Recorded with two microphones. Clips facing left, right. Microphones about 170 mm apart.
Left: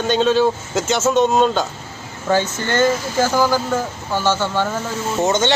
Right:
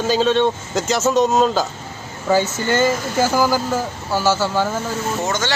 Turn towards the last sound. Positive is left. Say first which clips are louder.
# left 5 dB
turn(degrees=20)  # may be behind; listen again after turning